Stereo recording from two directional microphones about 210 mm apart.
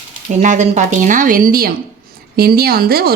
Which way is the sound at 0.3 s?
35° right (ahead or behind).